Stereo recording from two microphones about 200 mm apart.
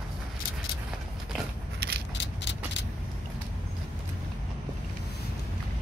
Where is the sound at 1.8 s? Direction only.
50° right (ahead or behind).